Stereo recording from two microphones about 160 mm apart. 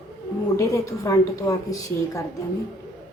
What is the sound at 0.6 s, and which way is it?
A woman's voice, 20° left (ahead or behind).